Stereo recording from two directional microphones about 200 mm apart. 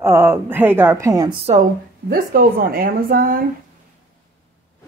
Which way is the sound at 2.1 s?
45° right (ahead or behind).